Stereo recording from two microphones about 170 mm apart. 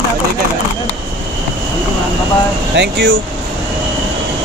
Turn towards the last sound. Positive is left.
turn(degrees=-90)